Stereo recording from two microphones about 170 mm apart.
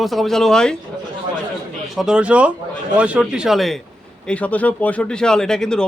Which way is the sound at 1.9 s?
5° right (ahead or behind).